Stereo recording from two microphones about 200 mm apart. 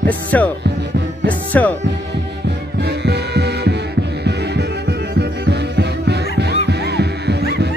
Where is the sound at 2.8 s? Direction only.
55° right (ahead or behind).